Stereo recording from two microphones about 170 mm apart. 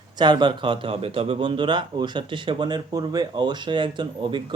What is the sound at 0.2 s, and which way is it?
Speech, 25° right (ahead or behind).